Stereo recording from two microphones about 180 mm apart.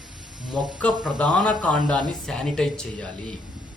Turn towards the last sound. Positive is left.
turn(degrees=5)  # may be behind; listen again after turning